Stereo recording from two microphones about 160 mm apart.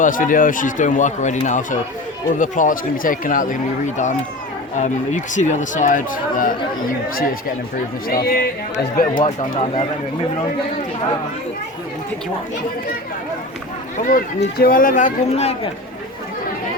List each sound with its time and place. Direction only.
0.0 s speech: 55° left (ahead or behind)
9.4 s speech: 40° left (ahead or behind)
13.9 s speech: 55° left (ahead or behind)